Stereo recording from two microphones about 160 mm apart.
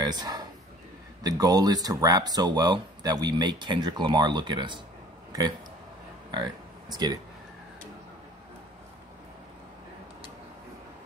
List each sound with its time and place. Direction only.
0.0 s a sound: 25° right (ahead or behind)
1.2 s speech: 25° right (ahead or behind)
6.3 s speech: 25° right (ahead or behind)